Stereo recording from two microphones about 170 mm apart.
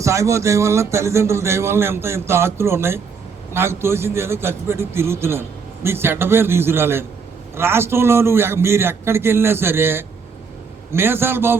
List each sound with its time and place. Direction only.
0.0 s a man's voice: 15° right (ahead or behind)